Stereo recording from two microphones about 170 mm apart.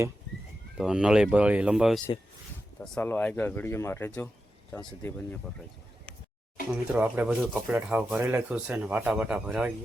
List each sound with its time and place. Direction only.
0.8 s speech: 5° right (ahead or behind)
2.8 s speech: 5° left (ahead or behind)
6.9 s speech: 10° right (ahead or behind)